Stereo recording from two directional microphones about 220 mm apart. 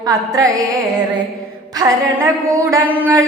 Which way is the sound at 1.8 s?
15° right (ahead or behind).